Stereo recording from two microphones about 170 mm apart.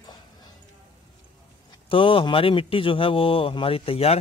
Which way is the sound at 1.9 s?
30° left (ahead or behind).